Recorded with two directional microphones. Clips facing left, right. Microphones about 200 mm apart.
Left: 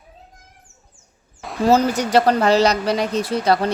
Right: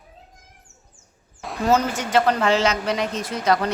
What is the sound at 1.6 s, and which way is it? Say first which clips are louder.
A woman's voice: left 4 dB; 35° left (ahead or behind).